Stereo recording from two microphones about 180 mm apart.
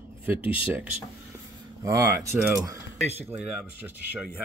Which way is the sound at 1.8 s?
20° right (ahead or behind).